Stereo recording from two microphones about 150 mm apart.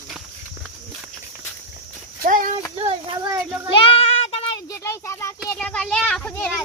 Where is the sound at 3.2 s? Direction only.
30° right (ahead or behind).